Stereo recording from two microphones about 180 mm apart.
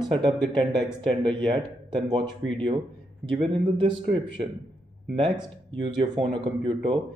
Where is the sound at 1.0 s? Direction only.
25° right (ahead or behind).